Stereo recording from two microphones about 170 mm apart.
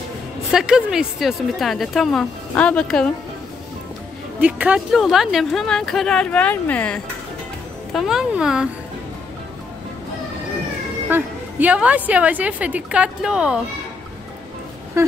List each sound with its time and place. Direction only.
0.5 s a woman's voice: 5° right (ahead or behind)
4.4 s a woman's voice: 10° right (ahead or behind); by 7.0 s 10° left (ahead or behind)
7.9 s a woman's voice: centre (ahead or behind)
11.1 s a woman's voice: 10° right (ahead or behind)
15.0 s a woman's voice: 15° right (ahead or behind)